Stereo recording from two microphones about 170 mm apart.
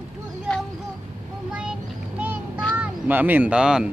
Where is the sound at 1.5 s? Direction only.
5° right (ahead or behind).